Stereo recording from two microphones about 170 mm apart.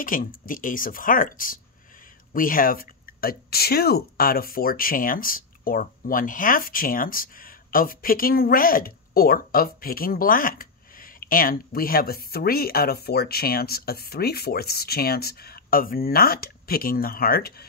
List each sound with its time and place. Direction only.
0.0 s speech: 55° left (ahead or behind)